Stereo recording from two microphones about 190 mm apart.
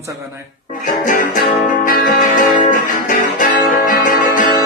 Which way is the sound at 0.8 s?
45° left (ahead or behind).